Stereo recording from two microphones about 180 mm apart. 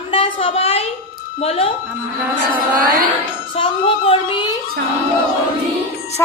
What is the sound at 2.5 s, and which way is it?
Speech, 50° right (ahead or behind).